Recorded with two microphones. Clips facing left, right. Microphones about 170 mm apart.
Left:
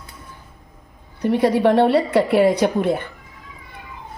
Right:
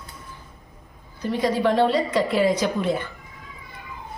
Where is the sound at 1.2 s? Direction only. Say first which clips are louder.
Left 5 dB; 65° left (ahead or behind).